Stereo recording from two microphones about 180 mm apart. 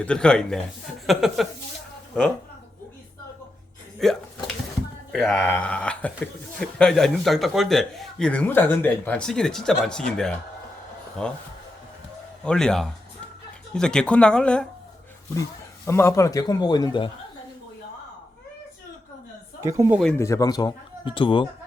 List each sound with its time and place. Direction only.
0.0 s a man's voice: 5° left (ahead or behind)
4.0 s a sound: centre (ahead or behind)
5.1 s a man's voice: 5° left (ahead or behind)
12.5 s a man's voice: 5° left (ahead or behind)
15.9 s speech: 15° left (ahead or behind)
19.6 s speech: 15° right (ahead or behind)
20.1 s speech: 15° left (ahead or behind)